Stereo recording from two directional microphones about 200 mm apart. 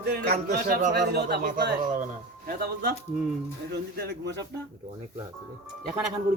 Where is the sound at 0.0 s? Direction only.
55° right (ahead or behind).